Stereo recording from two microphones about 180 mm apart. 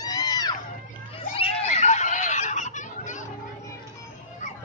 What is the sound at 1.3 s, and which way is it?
Fowl, 30° left (ahead or behind).